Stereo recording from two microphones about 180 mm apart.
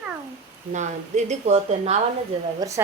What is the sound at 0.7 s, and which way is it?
A woman's voice, 40° right (ahead or behind).